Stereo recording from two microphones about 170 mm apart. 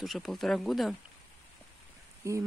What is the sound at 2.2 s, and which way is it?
Speech, 15° right (ahead or behind).